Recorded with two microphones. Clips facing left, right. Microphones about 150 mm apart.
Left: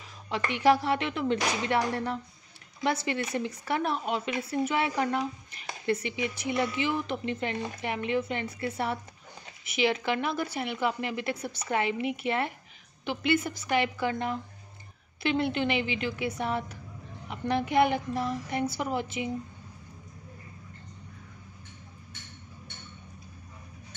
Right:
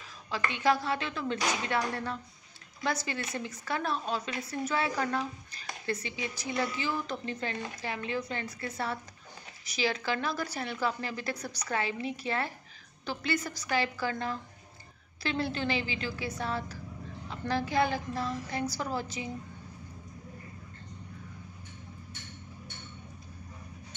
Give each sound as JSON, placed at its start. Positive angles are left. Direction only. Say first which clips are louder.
{"t": 0.5, "sound": "a woman's voice", "louder": "left 5 dB", "side_deg": 25}